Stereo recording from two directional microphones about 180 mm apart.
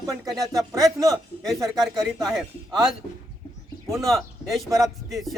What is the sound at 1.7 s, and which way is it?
Speech, centre (ahead or behind).